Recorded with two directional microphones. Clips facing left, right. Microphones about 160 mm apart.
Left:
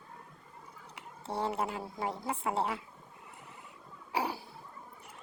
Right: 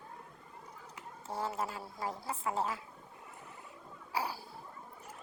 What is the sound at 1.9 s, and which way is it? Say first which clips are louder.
Speech: left 2 dB; 25° left (ahead or behind).